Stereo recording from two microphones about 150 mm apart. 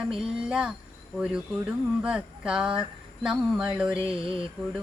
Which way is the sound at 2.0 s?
5° right (ahead or behind).